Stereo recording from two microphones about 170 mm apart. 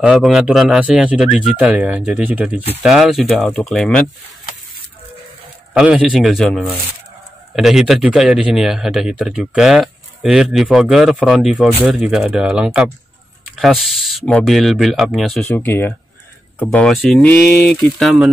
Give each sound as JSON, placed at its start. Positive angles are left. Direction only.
{"t": 0.0, "sound": "speech", "side_deg": 0}
{"t": 5.7, "sound": "speech", "side_deg": -5}
{"t": 15.4, "sound": "speech", "side_deg": 10}
{"t": 17.5, "sound": "speech", "side_deg": 70}
{"t": 17.7, "sound": "speech", "side_deg": 0}